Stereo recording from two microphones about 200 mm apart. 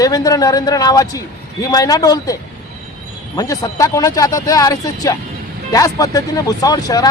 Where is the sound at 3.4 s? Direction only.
15° left (ahead or behind).